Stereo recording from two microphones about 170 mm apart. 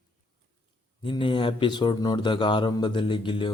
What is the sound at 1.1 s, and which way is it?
Speech, 30° left (ahead or behind).